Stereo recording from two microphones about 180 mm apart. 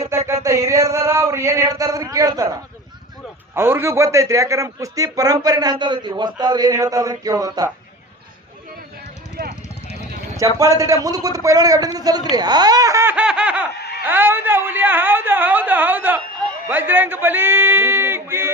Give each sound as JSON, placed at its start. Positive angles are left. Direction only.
{"t": 0.4, "sound": "a man's voice", "side_deg": -15}
{"t": 3.5, "sound": "a man's voice", "side_deg": -15}
{"t": 10.3, "sound": "a man's voice", "side_deg": -20}
{"t": 14.0, "sound": "a sound", "side_deg": -10}
{"t": 16.6, "sound": "a man's voice", "side_deg": -10}